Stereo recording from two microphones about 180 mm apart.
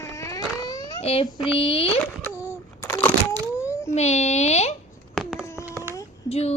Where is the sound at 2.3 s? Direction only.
15° left (ahead or behind).